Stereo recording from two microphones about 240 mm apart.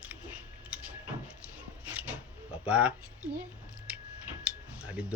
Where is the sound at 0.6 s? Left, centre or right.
Centre.